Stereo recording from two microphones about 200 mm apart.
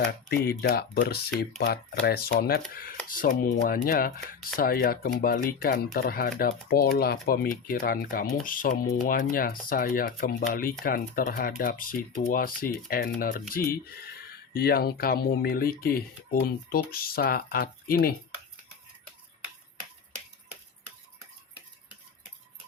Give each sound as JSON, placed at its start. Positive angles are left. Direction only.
{"t": 0.1, "sound": "speech", "side_deg": 50}